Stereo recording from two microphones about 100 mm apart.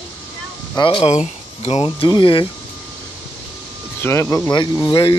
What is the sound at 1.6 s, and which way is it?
Speech, 90° left.